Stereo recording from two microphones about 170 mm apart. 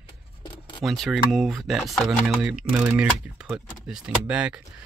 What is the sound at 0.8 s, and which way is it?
Speech, centre (ahead or behind).